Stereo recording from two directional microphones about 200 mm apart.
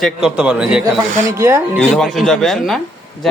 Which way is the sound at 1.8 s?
Centre (ahead or behind).